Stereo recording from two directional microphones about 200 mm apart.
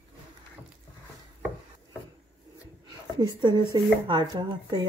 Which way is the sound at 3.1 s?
25° right (ahead or behind).